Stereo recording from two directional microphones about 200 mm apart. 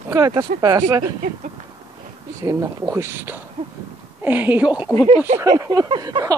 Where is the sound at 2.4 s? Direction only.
15° right (ahead or behind).